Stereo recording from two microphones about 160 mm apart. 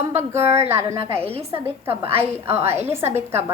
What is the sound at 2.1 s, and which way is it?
Speech, 40° right (ahead or behind).